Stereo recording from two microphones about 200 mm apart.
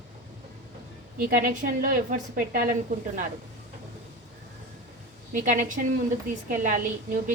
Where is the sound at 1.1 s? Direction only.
45° right (ahead or behind).